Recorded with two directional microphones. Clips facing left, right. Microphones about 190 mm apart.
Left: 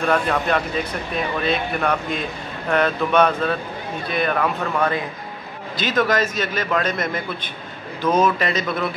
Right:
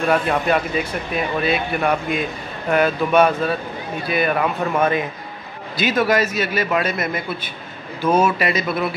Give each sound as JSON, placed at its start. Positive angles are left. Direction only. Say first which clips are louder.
{"t": 0.1, "sound": "speech", "louder": "right 2 dB", "side_deg": -10}
{"t": 4.7, "sound": "a man's voice", "louder": "right 4 dB", "side_deg": -20}
{"t": 5.8, "sound": "speech", "louder": "right 2 dB", "side_deg": -10}